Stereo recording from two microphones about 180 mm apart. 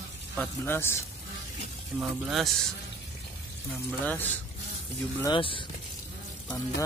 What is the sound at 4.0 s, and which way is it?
Speech, 10° left (ahead or behind).